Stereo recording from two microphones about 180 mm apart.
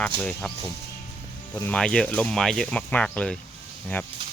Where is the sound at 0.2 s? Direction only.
5° left (ahead or behind).